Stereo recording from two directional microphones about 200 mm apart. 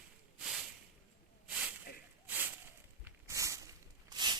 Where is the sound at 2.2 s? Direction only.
10° right (ahead or behind).